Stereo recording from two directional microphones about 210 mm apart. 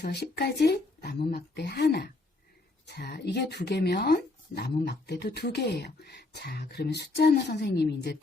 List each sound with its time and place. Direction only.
0.0 s speech: 50° left (ahead or behind)